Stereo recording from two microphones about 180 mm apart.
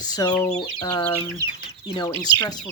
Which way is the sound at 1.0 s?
10° left (ahead or behind).